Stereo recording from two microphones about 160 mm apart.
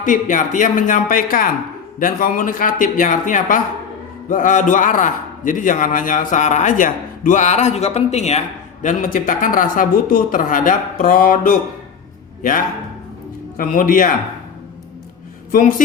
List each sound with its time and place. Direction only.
0.0 s a man's voice: 55° left (ahead or behind)